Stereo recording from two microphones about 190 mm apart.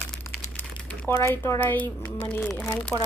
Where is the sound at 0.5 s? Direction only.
10° left (ahead or behind).